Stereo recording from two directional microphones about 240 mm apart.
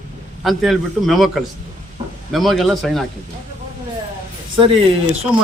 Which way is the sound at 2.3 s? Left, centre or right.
Centre.